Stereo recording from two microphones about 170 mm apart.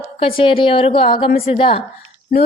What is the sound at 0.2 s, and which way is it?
A woman's voice, 35° left (ahead or behind).